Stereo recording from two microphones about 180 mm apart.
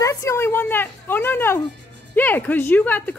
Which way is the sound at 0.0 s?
15° left (ahead or behind).